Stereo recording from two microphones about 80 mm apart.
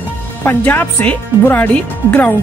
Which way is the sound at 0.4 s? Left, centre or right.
Left.